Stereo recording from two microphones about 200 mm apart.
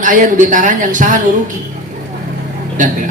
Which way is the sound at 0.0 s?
40° right (ahead or behind).